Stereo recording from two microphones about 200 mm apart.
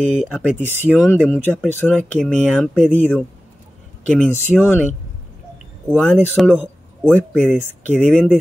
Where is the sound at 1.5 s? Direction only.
5° left (ahead or behind); by 3.1 s 10° right (ahead or behind).